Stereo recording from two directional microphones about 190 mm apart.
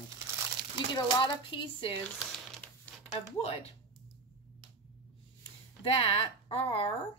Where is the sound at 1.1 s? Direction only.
25° left (ahead or behind).